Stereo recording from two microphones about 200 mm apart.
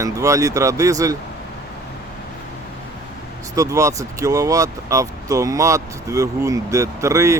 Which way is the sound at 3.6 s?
15° right (ahead or behind).